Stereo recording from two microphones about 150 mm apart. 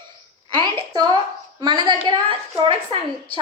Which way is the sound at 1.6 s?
30° right (ahead or behind).